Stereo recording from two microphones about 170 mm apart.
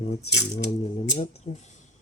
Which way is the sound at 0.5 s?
40° left (ahead or behind).